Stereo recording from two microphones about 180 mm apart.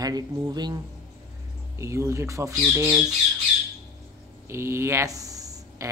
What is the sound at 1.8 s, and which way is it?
Speech, 15° right (ahead or behind).